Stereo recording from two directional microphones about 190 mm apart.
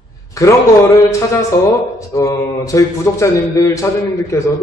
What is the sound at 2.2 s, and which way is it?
A man's voice, 15° left (ahead or behind).